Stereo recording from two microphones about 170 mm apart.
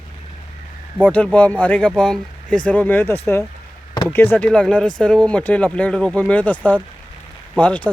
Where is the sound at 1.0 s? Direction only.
10° left (ahead or behind).